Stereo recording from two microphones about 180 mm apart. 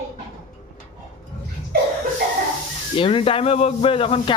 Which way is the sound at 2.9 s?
30° left (ahead or behind).